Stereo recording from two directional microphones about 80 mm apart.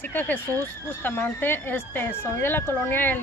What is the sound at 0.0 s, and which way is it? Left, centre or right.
Speech, left.